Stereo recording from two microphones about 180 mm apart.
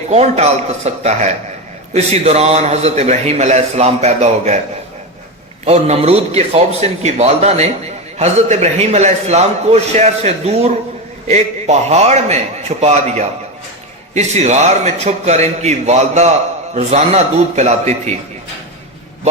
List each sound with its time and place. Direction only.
0.1 s a man's voice: 35° right (ahead or behind)
5.6 s a man's voice: 35° right (ahead or behind)